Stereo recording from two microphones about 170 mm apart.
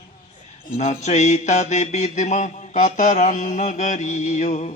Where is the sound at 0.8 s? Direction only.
45° left (ahead or behind).